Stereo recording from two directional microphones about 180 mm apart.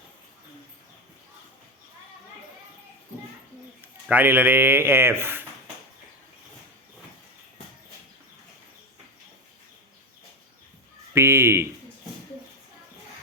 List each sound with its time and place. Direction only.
3.8 s speech: 10° right (ahead or behind)
11.1 s speech: 15° right (ahead or behind)